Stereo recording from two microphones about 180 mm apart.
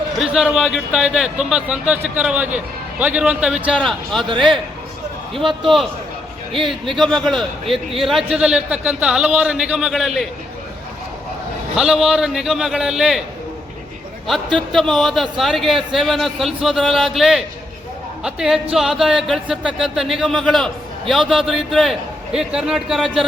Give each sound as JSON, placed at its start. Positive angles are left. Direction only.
{"t": 0.2, "sound": "a man's voice", "side_deg": -5}
{"t": 4.3, "sound": "a man's voice", "side_deg": -25}
{"t": 5.6, "sound": "a man's voice", "side_deg": 0}
{"t": 11.8, "sound": "a man's voice", "side_deg": -5}
{"t": 14.3, "sound": "a man's voice", "side_deg": 0}